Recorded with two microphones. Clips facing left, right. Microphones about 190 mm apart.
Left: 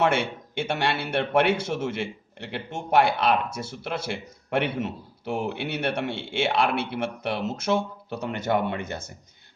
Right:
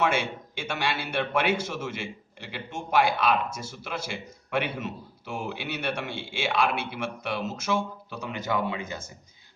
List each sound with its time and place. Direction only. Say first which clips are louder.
0.1 s a man's voice: left 2 dB; 65° left (ahead or behind)